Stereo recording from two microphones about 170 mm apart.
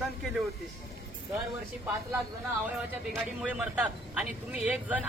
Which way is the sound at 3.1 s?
5° right (ahead or behind).